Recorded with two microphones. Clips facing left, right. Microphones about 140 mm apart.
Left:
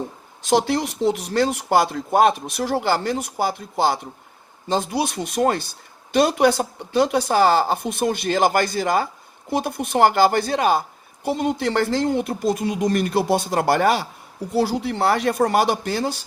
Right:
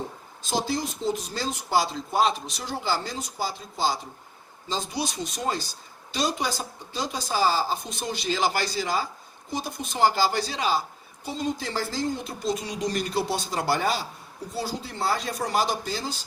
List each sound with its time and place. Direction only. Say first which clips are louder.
0.4 s speech: left 8 dB; 65° left (ahead or behind)